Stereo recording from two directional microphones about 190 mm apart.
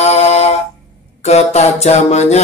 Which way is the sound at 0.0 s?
35° left (ahead or behind).